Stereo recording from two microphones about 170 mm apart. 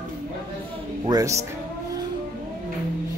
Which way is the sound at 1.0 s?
20° right (ahead or behind).